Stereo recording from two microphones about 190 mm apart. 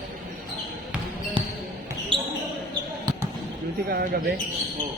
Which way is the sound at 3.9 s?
50° right (ahead or behind).